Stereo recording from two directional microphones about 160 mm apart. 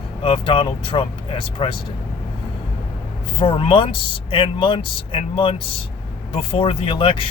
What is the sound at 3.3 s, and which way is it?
Speech, 35° left (ahead or behind).